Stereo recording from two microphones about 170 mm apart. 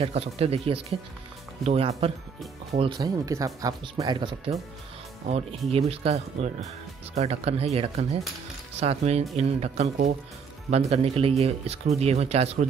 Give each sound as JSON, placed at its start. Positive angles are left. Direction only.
{"t": 0.0, "sound": "speech", "side_deg": -35}
{"t": 3.0, "sound": "speech", "side_deg": -20}
{"t": 5.3, "sound": "speech", "side_deg": -35}